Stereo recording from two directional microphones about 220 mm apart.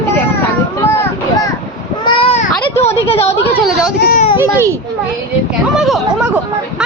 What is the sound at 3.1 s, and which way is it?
Speech, 30° left (ahead or behind).